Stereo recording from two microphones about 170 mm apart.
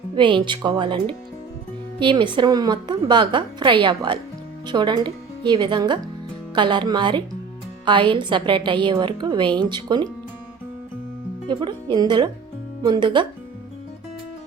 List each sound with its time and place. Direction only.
0.2 s a woman's voice: 30° right (ahead or behind)
11.4 s a woman's voice: 25° right (ahead or behind)